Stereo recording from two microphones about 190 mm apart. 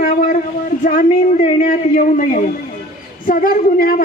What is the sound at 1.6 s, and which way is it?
Speech, 50° left (ahead or behind).